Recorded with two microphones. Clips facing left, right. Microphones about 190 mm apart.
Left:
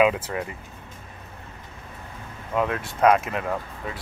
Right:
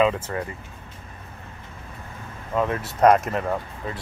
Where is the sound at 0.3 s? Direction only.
10° left (ahead or behind).